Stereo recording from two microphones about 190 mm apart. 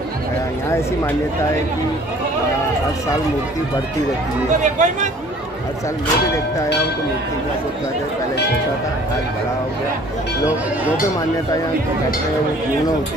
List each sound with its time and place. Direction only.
4.5 s speech: 40° right (ahead or behind)